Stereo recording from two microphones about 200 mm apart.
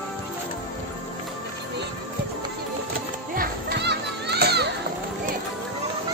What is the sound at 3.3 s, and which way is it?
Children playing, 50° right (ahead or behind).